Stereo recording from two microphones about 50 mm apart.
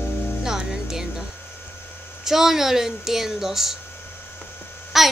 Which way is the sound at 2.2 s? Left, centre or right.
Centre.